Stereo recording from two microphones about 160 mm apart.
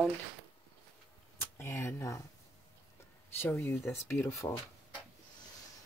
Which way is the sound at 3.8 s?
Centre (ahead or behind).